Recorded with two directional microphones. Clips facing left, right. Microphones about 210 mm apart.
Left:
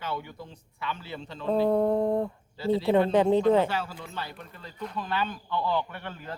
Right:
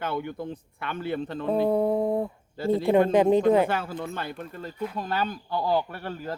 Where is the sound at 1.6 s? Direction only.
5° right (ahead or behind).